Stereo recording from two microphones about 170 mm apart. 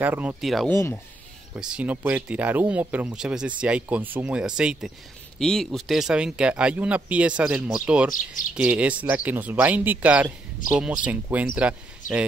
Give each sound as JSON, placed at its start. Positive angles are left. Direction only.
{"t": 0.0, "sound": "speech", "side_deg": -10}
{"t": 0.4, "sound": "speech", "side_deg": 0}
{"t": 0.7, "sound": "speech", "side_deg": 15}
{"t": 1.5, "sound": "speech", "side_deg": -5}
{"t": 12.0, "sound": "a sound", "side_deg": 50}